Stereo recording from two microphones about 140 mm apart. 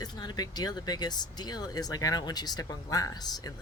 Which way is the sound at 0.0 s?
30° left (ahead or behind).